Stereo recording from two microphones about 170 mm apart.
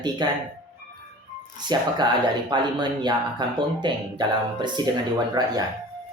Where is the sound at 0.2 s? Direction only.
25° right (ahead or behind).